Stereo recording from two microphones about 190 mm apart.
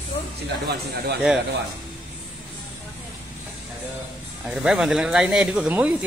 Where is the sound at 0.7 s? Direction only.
55° right (ahead or behind).